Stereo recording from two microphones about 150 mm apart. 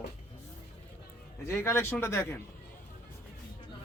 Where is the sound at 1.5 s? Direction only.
15° left (ahead or behind).